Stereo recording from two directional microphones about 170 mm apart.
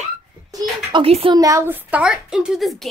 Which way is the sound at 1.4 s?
15° right (ahead or behind).